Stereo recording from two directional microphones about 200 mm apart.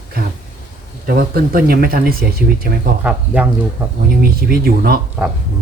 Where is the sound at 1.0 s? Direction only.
50° right (ahead or behind).